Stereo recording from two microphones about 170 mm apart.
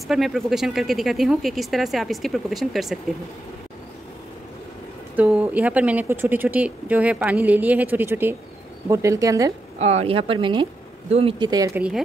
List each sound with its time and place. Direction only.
0.1 s speech: centre (ahead or behind)
5.1 s speech: 5° right (ahead or behind)
9.8 s speech: 40° right (ahead or behind); by 11.8 s 20° right (ahead or behind)